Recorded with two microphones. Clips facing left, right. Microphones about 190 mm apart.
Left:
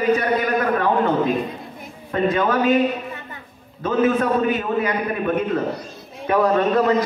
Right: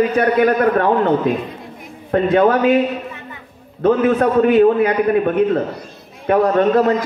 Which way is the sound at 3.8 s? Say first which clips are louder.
Right 5 dB; 60° right (ahead or behind).